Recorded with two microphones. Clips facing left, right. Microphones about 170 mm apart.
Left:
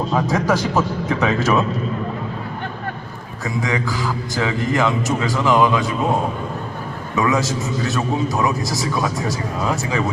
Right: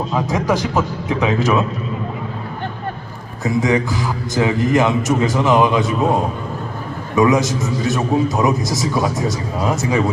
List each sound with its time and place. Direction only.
0.1 s a man's voice: 10° right (ahead or behind)
3.4 s a man's voice: 20° right (ahead or behind)
7.2 s a man's voice: 20° right (ahead or behind)